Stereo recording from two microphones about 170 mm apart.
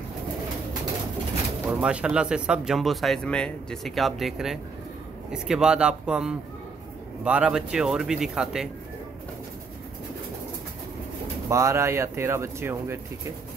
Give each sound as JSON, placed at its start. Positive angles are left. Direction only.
{"t": 1.7, "sound": "speech", "side_deg": -5}
{"t": 11.4, "sound": "speech", "side_deg": -15}